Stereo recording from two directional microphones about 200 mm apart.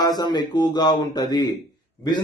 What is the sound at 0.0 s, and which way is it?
A man's voice, 20° left (ahead or behind).